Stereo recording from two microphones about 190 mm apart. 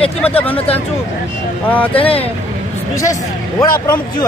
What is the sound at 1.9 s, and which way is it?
Speech, 30° left (ahead or behind).